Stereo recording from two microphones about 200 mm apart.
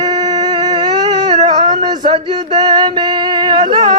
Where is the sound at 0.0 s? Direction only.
20° right (ahead or behind).